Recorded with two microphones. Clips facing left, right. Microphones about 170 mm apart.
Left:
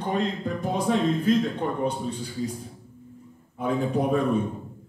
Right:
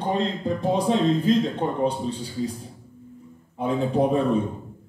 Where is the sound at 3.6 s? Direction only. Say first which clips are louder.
Right 3 dB; 30° right (ahead or behind).